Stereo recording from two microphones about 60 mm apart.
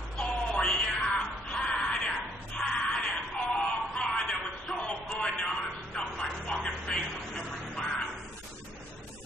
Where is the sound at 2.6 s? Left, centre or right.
Centre.